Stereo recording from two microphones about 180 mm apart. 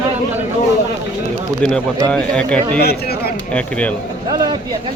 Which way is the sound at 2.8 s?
60° left (ahead or behind).